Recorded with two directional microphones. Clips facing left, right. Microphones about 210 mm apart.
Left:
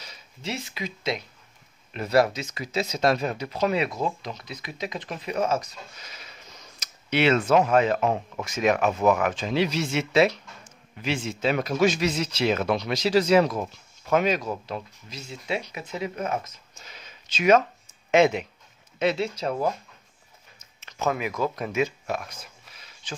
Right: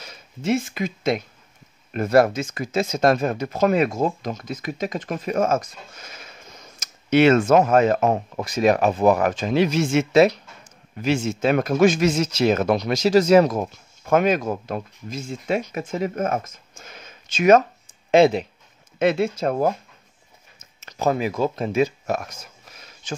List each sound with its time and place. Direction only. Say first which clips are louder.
0.0 s speech: right 8 dB; 50° right (ahead or behind)
18.1 s speech: right 4 dB; 35° right (ahead or behind)
18.9 s speech: right 5 dB; 50° right (ahead or behind)
20.8 s speech: right 5 dB; 35° right (ahead or behind)
22.0 s a sound: right 5 dB; 45° right (ahead or behind)